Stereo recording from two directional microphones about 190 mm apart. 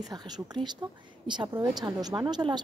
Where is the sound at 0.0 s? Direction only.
20° right (ahead or behind).